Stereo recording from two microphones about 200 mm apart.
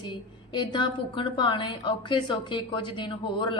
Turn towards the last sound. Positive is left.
turn(degrees=25)  # may be behind; listen again after turning